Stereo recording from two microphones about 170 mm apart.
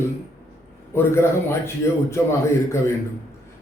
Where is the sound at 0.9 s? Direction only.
15° left (ahead or behind).